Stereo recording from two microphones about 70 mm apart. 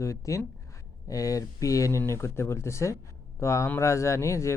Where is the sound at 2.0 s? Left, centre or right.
Left.